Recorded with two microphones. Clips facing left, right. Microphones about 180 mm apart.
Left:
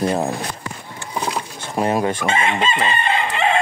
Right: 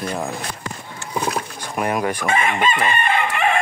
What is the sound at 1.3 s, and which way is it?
Chicken, 25° left (ahead or behind).